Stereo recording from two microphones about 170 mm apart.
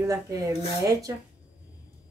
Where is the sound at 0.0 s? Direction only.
20° right (ahead or behind).